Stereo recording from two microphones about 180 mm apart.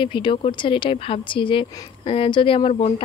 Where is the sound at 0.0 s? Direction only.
25° left (ahead or behind).